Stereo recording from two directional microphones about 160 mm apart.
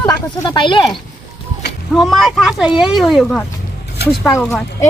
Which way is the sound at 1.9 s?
Centre (ahead or behind).